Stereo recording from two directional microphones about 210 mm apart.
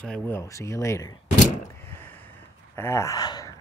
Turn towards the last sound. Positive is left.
turn(degrees=15)  # may be behind; listen again after turning